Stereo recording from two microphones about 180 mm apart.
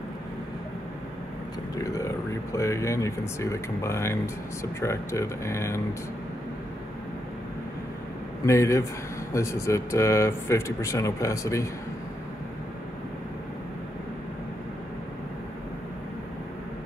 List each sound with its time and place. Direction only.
1.8 s speech: 15° left (ahead or behind)
8.5 s speech: 15° left (ahead or behind)